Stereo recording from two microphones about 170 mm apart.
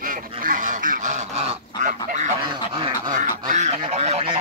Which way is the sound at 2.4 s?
30° right (ahead or behind).